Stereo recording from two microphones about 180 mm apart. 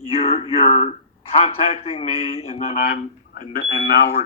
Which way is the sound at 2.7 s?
50° left (ahead or behind).